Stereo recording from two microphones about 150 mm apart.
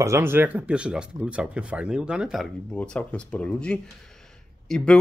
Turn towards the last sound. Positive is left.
turn(degrees=5)  # may be behind; listen again after turning